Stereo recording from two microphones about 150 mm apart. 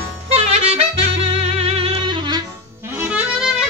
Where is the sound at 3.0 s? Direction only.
10° right (ahead or behind).